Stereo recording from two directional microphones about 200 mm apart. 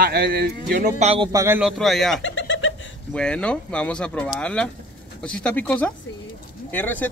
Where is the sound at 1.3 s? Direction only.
10° right (ahead or behind).